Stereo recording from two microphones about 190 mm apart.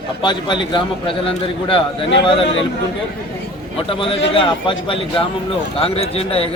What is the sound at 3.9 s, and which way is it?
A man's voice, 30° left (ahead or behind).